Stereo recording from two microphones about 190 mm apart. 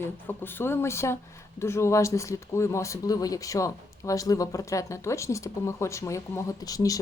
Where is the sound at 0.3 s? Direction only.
10° left (ahead or behind).